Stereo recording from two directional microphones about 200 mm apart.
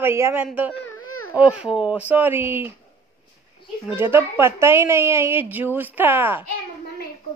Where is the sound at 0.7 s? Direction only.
90° left.